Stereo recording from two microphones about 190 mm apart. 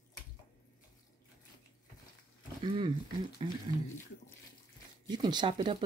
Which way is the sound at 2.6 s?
25° right (ahead or behind).